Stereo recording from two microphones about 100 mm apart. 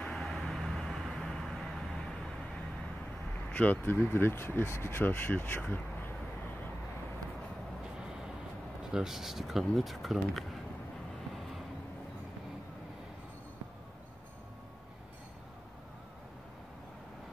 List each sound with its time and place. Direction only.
0.0 s vehicle: centre (ahead or behind)
3.5 s speech: 15° left (ahead or behind)
8.9 s speech: 5° right (ahead or behind)